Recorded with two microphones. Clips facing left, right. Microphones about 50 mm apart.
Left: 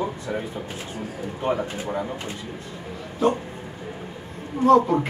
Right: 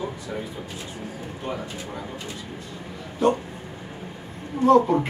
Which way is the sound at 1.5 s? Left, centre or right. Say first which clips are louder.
Left 7 dB; left.